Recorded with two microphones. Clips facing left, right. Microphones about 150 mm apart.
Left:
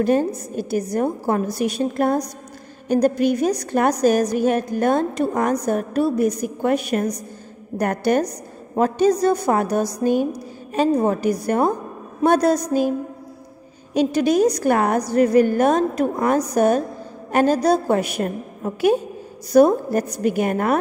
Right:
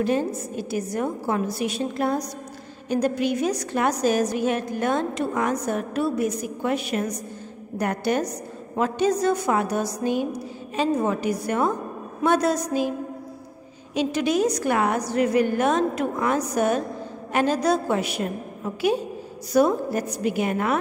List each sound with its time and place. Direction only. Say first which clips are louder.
0.0 s a woman's voice: left 4 dB; 45° left (ahead or behind)
13.9 s a woman's voice: left 5 dB; 40° left (ahead or behind)